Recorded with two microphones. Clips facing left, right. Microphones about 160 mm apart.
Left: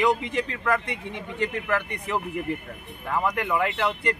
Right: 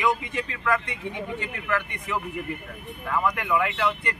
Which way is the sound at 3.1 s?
35° left (ahead or behind).